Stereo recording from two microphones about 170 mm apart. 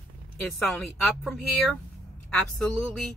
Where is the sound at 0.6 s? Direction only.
Centre (ahead or behind).